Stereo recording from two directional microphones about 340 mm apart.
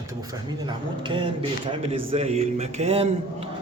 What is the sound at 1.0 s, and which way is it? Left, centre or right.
A man's voice, centre.